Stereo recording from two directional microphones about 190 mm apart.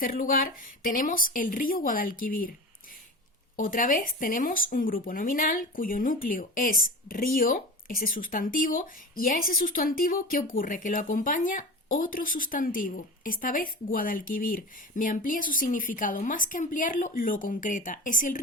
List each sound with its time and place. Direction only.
0.0 s speech: 45° left (ahead or behind)
3.6 s speech: 45° left (ahead or behind)